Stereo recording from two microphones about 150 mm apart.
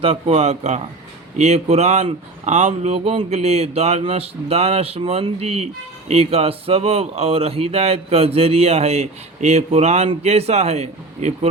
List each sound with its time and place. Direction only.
0.0 s speech: 40° right (ahead or behind)